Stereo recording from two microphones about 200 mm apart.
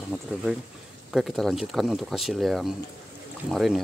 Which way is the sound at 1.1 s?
Centre (ahead or behind).